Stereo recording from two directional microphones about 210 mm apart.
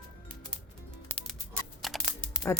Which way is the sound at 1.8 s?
Centre (ahead or behind).